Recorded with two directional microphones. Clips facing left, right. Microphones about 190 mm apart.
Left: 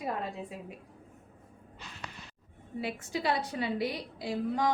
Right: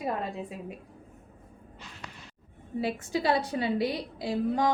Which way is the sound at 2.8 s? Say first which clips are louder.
Right 4 dB; 35° right (ahead or behind).